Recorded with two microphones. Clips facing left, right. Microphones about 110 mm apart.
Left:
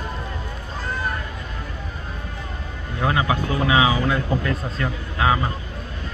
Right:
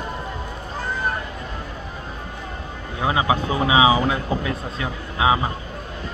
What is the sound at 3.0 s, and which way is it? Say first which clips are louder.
Speech: right 1 dB; 15° right (ahead or behind).